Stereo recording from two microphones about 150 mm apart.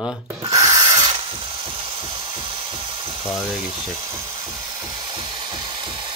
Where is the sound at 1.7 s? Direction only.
35° right (ahead or behind).